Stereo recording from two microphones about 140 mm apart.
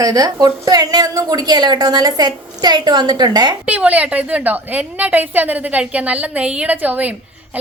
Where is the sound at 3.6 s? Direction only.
10° right (ahead or behind).